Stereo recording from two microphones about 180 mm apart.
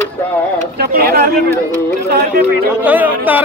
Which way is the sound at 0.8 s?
60° right (ahead or behind).